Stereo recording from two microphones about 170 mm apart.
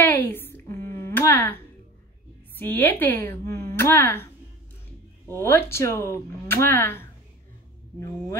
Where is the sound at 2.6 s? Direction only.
10° left (ahead or behind).